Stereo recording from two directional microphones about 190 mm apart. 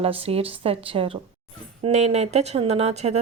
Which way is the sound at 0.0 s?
30° right (ahead or behind).